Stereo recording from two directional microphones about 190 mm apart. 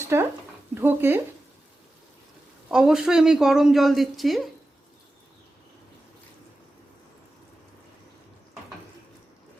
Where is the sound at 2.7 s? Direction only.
5° right (ahead or behind).